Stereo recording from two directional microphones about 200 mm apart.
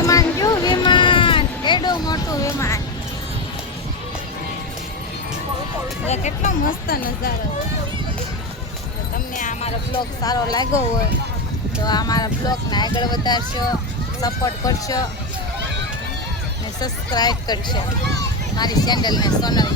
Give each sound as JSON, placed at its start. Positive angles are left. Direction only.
{"t": 0.0, "sound": "a sound", "side_deg": 15}
{"t": 6.1, "sound": "speech", "side_deg": 35}
{"t": 9.4, "sound": "music", "side_deg": 40}
{"t": 10.0, "sound": "speech", "side_deg": 20}
{"t": 11.9, "sound": "speech", "side_deg": 20}
{"t": 16.8, "sound": "speech", "side_deg": 20}